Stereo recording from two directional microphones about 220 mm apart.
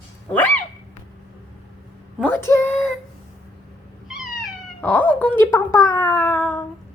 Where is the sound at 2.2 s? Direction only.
10° left (ahead or behind).